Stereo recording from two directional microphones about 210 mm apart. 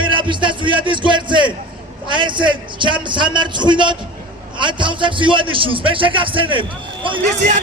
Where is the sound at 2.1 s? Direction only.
20° right (ahead or behind).